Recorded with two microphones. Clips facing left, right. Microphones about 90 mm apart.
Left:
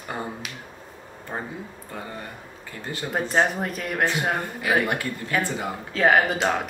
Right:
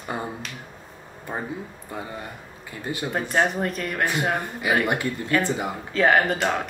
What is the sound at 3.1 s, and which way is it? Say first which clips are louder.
Speech: left 1 dB; 5° left (ahead or behind).